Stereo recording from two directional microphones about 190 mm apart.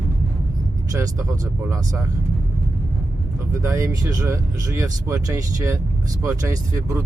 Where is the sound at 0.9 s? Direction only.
15° right (ahead or behind).